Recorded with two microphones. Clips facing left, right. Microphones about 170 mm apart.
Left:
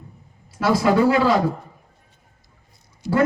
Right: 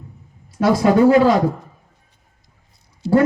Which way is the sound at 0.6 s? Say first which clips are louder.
Right 4 dB; 45° right (ahead or behind).